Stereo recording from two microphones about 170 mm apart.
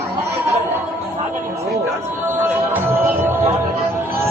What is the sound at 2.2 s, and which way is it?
Music, 15° right (ahead or behind).